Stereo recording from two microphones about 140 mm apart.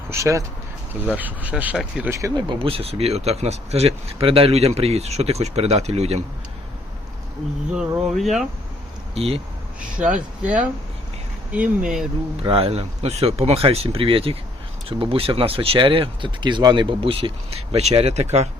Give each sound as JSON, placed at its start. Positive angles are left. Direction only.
{"t": 0.1, "sound": "speech", "side_deg": -20}
{"t": 1.0, "sound": "speech", "side_deg": -10}
{"t": 2.0, "sound": "speech", "side_deg": -20}
{"t": 2.5, "sound": "speech", "side_deg": -40}
{"t": 7.7, "sound": "speech", "side_deg": -5}
{"t": 9.1, "sound": "speech", "side_deg": -45}
{"t": 10.4, "sound": "speech", "side_deg": -10}
{"t": 12.4, "sound": "speech", "side_deg": -40}